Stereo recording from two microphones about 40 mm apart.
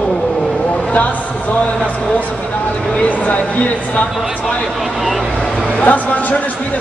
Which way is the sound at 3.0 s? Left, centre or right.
Left.